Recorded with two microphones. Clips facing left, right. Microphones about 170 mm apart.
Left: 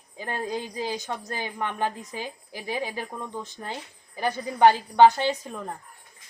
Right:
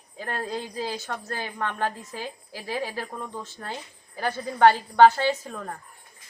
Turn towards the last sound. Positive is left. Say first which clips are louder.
# right 1 dB
turn(degrees=15)  # may be behind; listen again after turning